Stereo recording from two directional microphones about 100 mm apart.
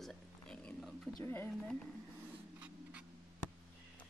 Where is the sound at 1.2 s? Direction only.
20° left (ahead or behind).